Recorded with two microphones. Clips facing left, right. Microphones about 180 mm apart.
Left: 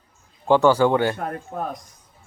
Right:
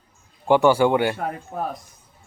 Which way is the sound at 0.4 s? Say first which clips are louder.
Even; 15° right (ahead or behind).